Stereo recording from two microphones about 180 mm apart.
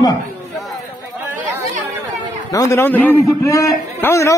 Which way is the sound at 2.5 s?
15° left (ahead or behind).